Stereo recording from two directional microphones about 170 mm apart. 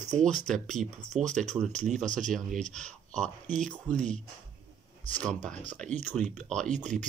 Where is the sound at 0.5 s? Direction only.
Centre (ahead or behind).